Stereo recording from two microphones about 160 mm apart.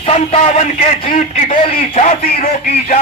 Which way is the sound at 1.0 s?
50° left (ahead or behind).